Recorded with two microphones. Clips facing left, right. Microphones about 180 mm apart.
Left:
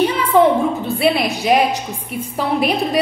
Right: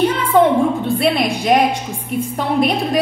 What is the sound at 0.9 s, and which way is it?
A woman's voice, 5° left (ahead or behind).